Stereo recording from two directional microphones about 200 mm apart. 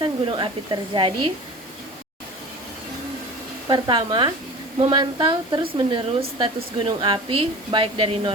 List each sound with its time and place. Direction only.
0.0 s speech: 25° right (ahead or behind)
3.7 s a woman's voice: 25° right (ahead or behind)